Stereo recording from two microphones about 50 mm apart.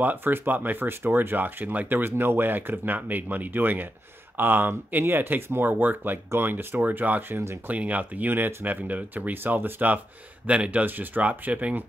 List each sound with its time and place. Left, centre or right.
0.0 s speech: right
6.8 s speech: right
8.6 s speech: right